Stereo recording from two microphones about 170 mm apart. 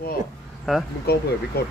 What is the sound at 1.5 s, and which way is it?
Speech, 70° left (ahead or behind).